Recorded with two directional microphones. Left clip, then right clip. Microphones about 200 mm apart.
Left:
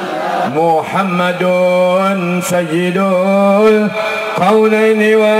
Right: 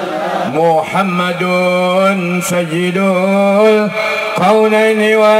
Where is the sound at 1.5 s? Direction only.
30° right (ahead or behind).